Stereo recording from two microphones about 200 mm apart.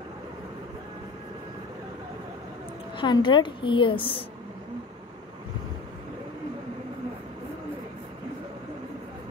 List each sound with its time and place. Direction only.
3.0 s a woman's voice: 25° left (ahead or behind)